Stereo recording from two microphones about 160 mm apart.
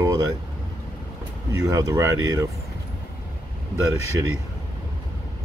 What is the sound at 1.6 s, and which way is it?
Speech, 20° right (ahead or behind).